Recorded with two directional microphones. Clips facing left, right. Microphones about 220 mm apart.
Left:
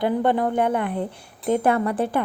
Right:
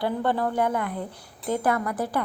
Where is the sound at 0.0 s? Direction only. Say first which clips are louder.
Left 4 dB; 20° left (ahead or behind).